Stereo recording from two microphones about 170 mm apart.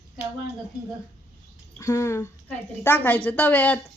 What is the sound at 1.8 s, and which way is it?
Speech, 15° left (ahead or behind).